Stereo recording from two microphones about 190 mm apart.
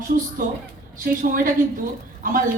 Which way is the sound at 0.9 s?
45° right (ahead or behind).